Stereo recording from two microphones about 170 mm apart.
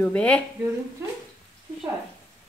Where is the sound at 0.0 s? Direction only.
5° left (ahead or behind).